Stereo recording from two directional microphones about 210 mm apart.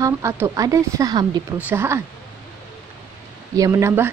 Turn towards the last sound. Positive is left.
turn(degrees=-10)  # may be behind; listen again after turning